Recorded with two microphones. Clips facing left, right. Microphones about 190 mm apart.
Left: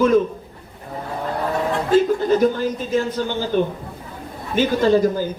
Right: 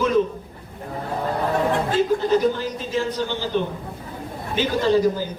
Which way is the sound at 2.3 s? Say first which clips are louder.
Left 3 dB; 50° left (ahead or behind).